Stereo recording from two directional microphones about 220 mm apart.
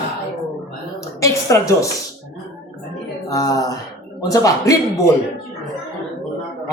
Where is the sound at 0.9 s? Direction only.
15° left (ahead or behind).